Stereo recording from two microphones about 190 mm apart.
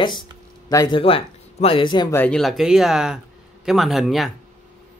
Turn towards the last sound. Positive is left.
turn(degrees=0)  # may be behind; listen again after turning